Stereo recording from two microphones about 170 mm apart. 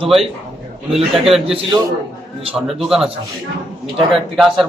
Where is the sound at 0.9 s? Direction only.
Centre (ahead or behind).